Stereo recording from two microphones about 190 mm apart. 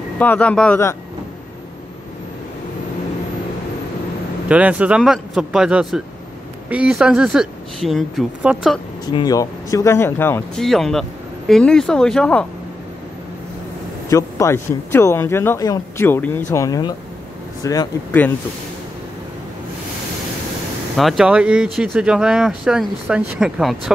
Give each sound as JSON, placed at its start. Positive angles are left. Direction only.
{"t": 0.2, "sound": "speech", "side_deg": 10}
{"t": 4.5, "sound": "speech", "side_deg": -5}
{"t": 9.0, "sound": "speech", "side_deg": 20}
{"t": 14.0, "sound": "speech", "side_deg": 15}
{"t": 20.9, "sound": "speech", "side_deg": 0}